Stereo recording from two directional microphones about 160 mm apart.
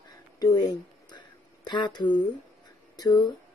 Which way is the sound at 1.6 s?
30° left (ahead or behind).